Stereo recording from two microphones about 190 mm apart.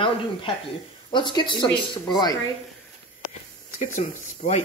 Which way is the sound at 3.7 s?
40° left (ahead or behind).